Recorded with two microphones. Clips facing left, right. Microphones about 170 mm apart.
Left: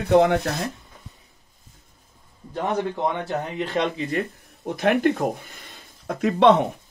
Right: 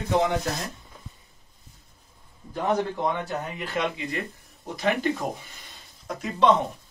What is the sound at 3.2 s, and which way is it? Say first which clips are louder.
Speech: left 5 dB; 25° left (ahead or behind).